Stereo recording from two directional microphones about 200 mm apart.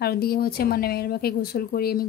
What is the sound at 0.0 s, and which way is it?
Speech, 50° left (ahead or behind).